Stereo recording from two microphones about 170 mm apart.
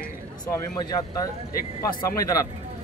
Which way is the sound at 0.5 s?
20° left (ahead or behind).